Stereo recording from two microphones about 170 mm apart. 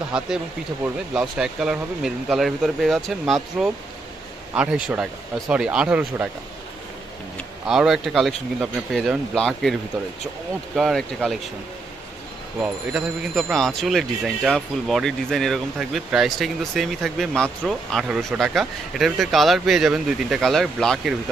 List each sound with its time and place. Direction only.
0.8 s speech: 5° right (ahead or behind)
7.6 s speech: 5° right (ahead or behind)
10.8 s speech: centre (ahead or behind)
12.6 s speech: centre (ahead or behind)